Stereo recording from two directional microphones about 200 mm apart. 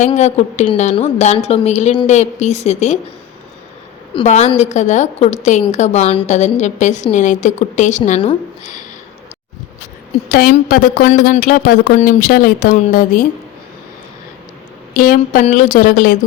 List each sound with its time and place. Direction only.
0.0 s a woman's voice: 35° left (ahead or behind)
4.1 s a woman's voice: 30° left (ahead or behind)
10.2 s a woman's voice: 45° left (ahead or behind)
14.9 s a woman's voice: 45° left (ahead or behind)